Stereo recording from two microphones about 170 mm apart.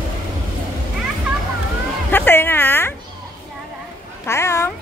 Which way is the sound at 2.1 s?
10° left (ahead or behind).